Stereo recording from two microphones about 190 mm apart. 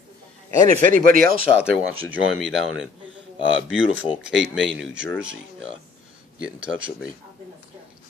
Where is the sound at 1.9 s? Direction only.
90° right.